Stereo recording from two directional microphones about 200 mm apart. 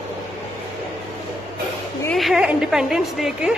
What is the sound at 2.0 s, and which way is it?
A woman's voice, centre (ahead or behind).